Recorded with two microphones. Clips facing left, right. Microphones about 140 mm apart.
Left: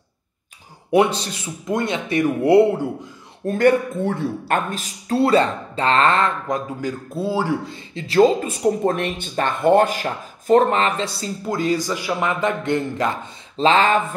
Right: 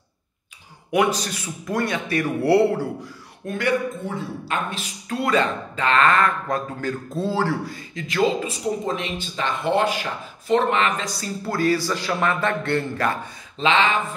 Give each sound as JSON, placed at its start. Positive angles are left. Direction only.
{"t": 0.9, "sound": "a man's voice", "side_deg": 30}
{"t": 3.4, "sound": "speech", "side_deg": 45}
{"t": 4.0, "sound": "speech", "side_deg": 65}
{"t": 4.6, "sound": "speech", "side_deg": 40}
{"t": 6.4, "sound": "a man's voice", "side_deg": 15}
{"t": 7.7, "sound": "speech", "side_deg": 30}
{"t": 8.4, "sound": "speech", "side_deg": 55}
{"t": 11.4, "sound": "a man's voice", "side_deg": 15}
{"t": 13.6, "sound": "speech", "side_deg": 40}